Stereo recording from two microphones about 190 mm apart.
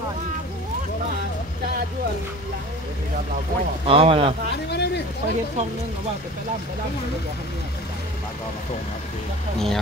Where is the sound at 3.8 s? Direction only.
30° right (ahead or behind).